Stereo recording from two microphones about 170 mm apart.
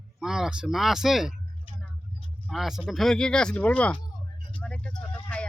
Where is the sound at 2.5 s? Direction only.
Centre (ahead or behind).